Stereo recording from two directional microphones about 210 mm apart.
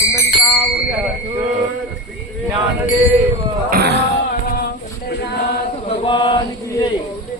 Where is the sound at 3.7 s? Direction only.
50° right (ahead or behind).